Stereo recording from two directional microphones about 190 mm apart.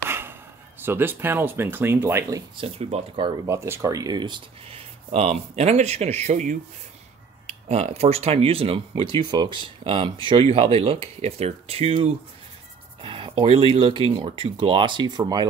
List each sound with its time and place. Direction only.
0.1 s speech: 10° right (ahead or behind)
2.6 s speech: 30° right (ahead or behind)
3.4 s speech: 15° right (ahead or behind)